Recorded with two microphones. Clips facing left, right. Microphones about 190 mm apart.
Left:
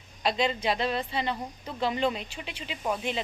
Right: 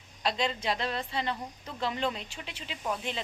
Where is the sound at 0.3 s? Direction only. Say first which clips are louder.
Left 3 dB; 5° left (ahead or behind).